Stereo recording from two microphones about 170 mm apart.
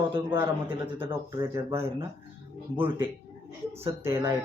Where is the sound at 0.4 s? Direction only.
10° right (ahead or behind).